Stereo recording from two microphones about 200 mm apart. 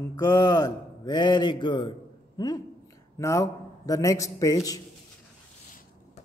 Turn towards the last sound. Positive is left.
turn(degrees=15)  # may be behind; listen again after turning